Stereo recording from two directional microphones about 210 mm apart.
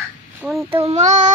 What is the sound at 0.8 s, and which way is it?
Child singing, 35° right (ahead or behind).